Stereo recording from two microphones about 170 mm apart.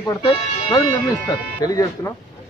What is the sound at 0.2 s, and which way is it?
A man's voice, 30° left (ahead or behind).